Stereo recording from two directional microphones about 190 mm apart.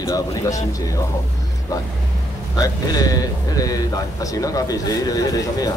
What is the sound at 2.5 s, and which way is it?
Speech, 20° left (ahead or behind).